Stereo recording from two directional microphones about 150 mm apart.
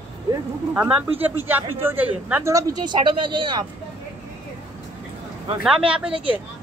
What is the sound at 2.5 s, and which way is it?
Speech, 25° right (ahead or behind).